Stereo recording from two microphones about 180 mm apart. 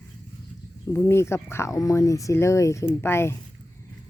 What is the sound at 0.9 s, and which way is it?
Speech, 15° left (ahead or behind).